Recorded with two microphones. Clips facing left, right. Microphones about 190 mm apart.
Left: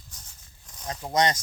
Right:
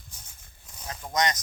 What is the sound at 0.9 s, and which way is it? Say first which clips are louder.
Speech: left 3 dB; 30° left (ahead or behind).